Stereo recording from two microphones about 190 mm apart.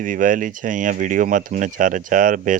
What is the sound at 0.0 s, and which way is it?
Speech, 45° right (ahead or behind).